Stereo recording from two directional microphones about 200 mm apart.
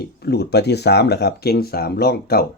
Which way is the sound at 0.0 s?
55° left (ahead or behind).